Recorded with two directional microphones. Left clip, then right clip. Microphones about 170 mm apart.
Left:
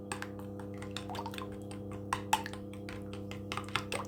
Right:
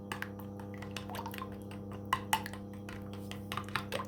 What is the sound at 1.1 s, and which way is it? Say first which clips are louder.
Drip: left 1 dB; 20° left (ahead or behind).